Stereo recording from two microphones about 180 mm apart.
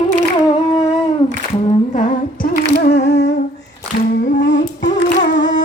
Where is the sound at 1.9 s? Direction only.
45° left (ahead or behind); by 3.3 s 65° left (ahead or behind).